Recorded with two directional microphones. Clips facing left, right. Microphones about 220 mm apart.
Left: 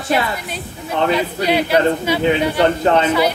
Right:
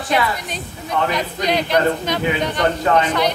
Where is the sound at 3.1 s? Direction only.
5° left (ahead or behind).